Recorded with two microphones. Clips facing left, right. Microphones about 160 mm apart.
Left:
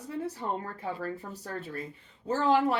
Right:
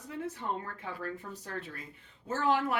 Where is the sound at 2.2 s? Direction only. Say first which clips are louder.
Left 4 dB; 30° left (ahead or behind).